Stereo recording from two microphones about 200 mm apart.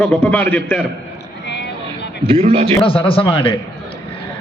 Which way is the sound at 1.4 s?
60° left (ahead or behind).